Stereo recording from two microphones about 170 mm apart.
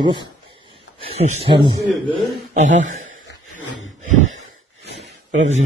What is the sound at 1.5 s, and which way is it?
Speech, 30° right (ahead or behind).